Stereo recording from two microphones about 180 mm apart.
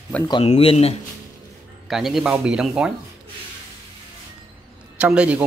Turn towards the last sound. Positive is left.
turn(degrees=-5)  # may be behind; listen again after turning